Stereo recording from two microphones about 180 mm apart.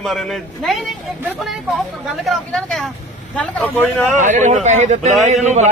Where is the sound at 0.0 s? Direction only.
Centre (ahead or behind).